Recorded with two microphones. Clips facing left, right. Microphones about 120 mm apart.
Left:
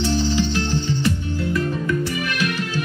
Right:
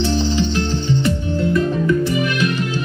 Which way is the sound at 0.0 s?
20° right (ahead or behind).